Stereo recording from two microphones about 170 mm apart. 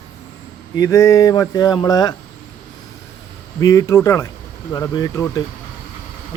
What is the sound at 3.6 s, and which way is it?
Speech, 20° left (ahead or behind).